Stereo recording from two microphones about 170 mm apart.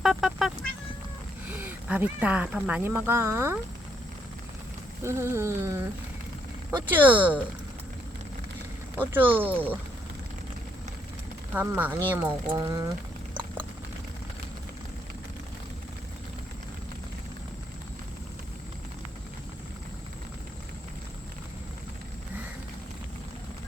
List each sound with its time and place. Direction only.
0.0 s cat: centre (ahead or behind)
1.5 s speech: 10° right (ahead or behind)
5.0 s speech: 15° right (ahead or behind)
9.0 s speech: 10° right (ahead or behind)
11.5 s speech: 10° right (ahead or behind)